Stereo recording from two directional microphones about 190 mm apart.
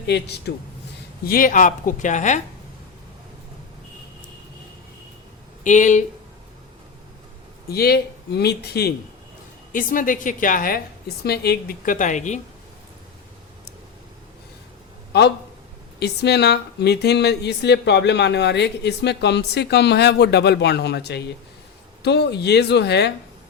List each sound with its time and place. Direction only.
0.0 s speech: 60° left (ahead or behind)
1.3 s a woman's voice: 45° left (ahead or behind)
5.6 s speech: 40° left (ahead or behind)
7.7 s speech: 55° left (ahead or behind)
9.7 s a woman's voice: 45° left (ahead or behind)
11.2 s a woman's voice: 55° left (ahead or behind); by 12.4 s 40° left (ahead or behind)
15.1 s speech: 60° left (ahead or behind)